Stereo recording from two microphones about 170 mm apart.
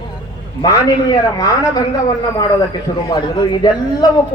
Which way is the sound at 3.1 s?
25° left (ahead or behind).